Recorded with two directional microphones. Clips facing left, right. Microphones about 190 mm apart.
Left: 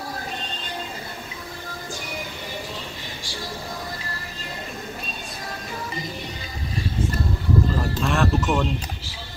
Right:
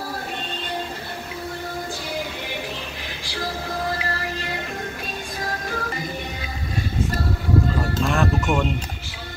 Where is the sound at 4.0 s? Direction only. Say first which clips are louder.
Right 8 dB; 70° right (ahead or behind).